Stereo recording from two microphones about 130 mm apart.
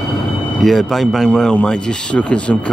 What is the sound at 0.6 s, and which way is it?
Speech, centre (ahead or behind).